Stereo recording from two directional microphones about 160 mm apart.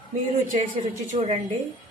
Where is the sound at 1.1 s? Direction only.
40° right (ahead or behind).